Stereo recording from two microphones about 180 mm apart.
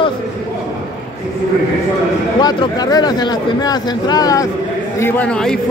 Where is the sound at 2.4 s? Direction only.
20° left (ahead or behind).